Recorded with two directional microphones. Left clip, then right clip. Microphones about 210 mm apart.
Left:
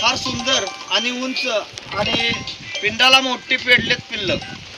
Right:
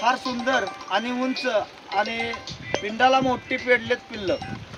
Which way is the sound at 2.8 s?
20° right (ahead or behind).